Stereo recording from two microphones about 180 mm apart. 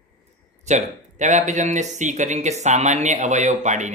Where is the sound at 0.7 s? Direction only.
40° right (ahead or behind).